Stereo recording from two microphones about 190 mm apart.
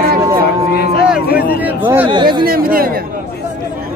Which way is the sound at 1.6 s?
10° right (ahead or behind).